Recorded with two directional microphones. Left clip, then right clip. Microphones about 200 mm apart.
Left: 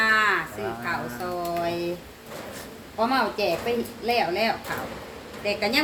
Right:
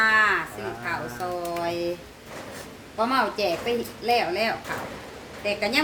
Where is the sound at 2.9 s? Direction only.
15° right (ahead or behind).